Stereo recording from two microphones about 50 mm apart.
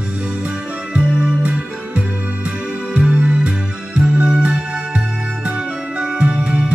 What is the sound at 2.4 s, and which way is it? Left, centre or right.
Music, right.